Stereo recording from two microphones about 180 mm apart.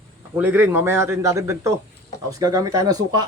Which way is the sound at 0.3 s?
10° right (ahead or behind).